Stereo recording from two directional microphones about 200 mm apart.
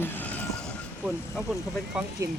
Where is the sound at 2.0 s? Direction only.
5° right (ahead or behind).